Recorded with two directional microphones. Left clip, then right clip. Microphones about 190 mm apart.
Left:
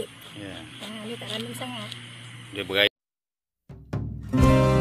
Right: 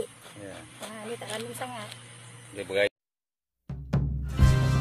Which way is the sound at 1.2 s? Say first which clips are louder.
Left 4 dB; 10° right (ahead or behind).